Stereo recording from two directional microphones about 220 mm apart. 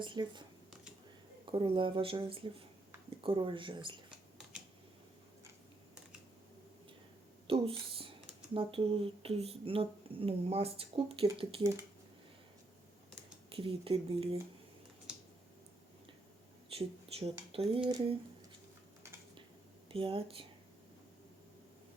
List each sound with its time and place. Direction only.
0.0 s speech: 20° right (ahead or behind)
1.5 s speech: 25° right (ahead or behind)
7.4 s speech: 25° right (ahead or behind)
13.5 s speech: 25° right (ahead or behind)
16.6 s speech: 25° right (ahead or behind)
19.9 s speech: 25° right (ahead or behind)